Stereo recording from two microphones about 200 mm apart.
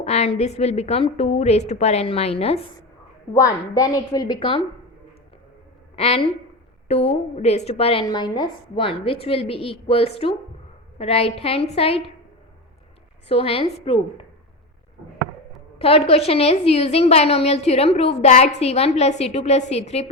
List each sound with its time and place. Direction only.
0.0 s a woman's voice: 30° left (ahead or behind)
3.3 s a woman's voice: 15° left (ahead or behind)
6.0 s a woman's voice: 30° left (ahead or behind)
13.2 s a woman's voice: 30° left (ahead or behind)
15.8 s a woman's voice: 30° left (ahead or behind)